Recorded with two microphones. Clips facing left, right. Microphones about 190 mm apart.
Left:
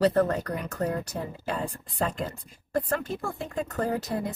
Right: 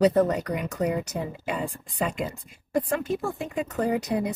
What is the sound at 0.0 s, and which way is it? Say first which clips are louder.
Speech: right 2 dB; 15° right (ahead or behind).